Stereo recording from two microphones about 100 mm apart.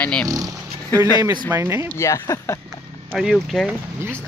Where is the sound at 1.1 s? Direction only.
40° right (ahead or behind).